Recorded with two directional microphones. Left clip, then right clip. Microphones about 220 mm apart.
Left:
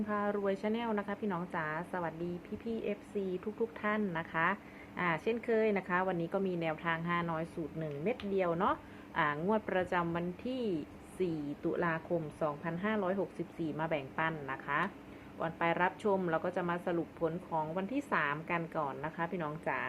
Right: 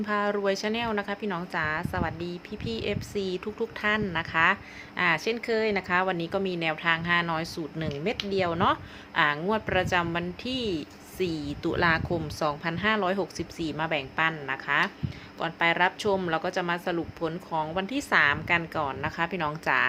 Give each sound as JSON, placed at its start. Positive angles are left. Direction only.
{"t": 0.0, "sound": "a woman's voice", "side_deg": -25}